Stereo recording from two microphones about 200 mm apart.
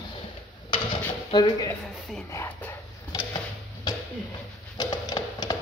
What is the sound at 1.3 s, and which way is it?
Speech, 20° left (ahead or behind).